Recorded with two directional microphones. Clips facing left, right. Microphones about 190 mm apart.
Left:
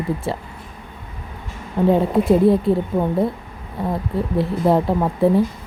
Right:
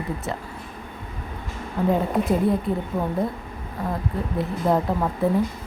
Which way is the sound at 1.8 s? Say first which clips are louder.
Left 6 dB; 25° left (ahead or behind).